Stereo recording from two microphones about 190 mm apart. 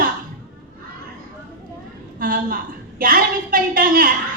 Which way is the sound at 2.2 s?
45° right (ahead or behind).